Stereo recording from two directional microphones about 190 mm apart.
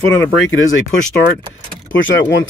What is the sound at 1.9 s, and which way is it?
Speech, 75° left (ahead or behind).